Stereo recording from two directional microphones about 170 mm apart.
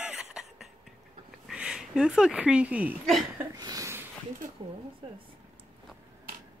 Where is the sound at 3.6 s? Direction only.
20° right (ahead or behind).